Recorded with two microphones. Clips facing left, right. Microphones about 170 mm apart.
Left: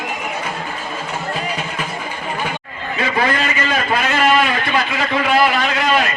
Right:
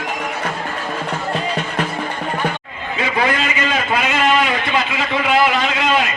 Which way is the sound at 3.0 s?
15° right (ahead or behind).